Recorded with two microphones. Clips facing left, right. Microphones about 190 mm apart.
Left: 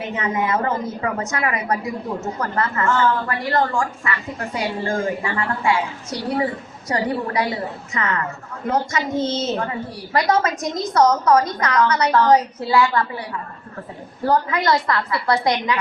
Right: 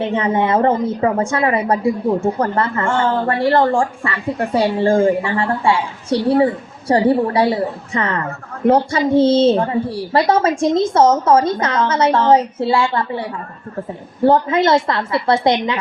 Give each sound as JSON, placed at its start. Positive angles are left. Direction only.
{"t": 0.0, "sound": "a woman's voice", "side_deg": -30}
{"t": 14.3, "sound": "a woman's voice", "side_deg": -25}